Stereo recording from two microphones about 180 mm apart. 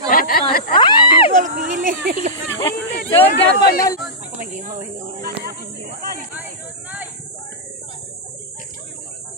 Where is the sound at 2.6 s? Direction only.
15° left (ahead or behind).